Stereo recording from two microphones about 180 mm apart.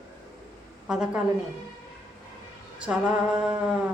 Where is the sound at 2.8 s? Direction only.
5° right (ahead or behind).